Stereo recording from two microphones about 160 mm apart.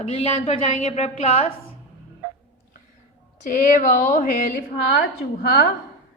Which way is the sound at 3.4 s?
55° left (ahead or behind).